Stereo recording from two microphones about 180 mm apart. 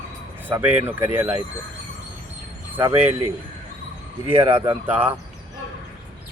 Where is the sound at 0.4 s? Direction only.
10° right (ahead or behind).